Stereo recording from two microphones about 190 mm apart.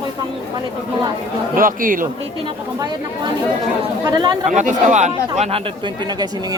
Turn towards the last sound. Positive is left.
turn(degrees=-35)  # may be behind; listen again after turning